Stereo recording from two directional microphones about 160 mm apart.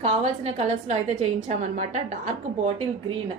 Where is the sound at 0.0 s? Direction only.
40° right (ahead or behind).